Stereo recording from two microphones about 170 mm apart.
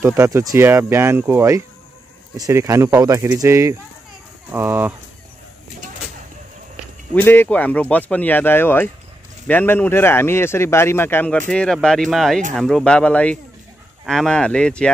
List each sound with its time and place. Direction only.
0.0 s speech: 15° right (ahead or behind)
7.2 s speech: 10° left (ahead or behind)